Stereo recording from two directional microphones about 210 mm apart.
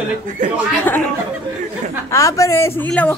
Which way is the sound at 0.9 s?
10° left (ahead or behind).